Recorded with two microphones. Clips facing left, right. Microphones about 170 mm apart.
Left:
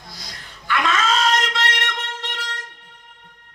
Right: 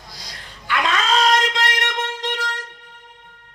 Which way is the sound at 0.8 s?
35° right (ahead or behind).